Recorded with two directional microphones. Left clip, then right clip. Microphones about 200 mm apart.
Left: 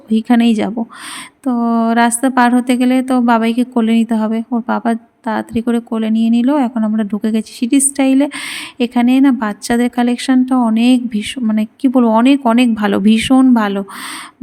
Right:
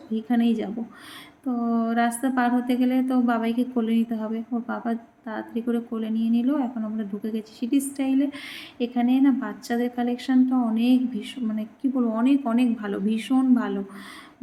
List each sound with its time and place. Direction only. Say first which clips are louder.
0.1 s a woman's voice: left 11 dB; 55° left (ahead or behind)